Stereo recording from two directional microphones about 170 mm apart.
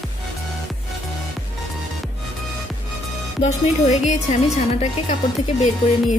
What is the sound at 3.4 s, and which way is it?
Speech, 45° left (ahead or behind).